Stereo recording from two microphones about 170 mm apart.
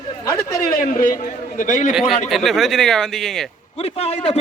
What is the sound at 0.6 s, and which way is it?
A man's voice, 55° left (ahead or behind).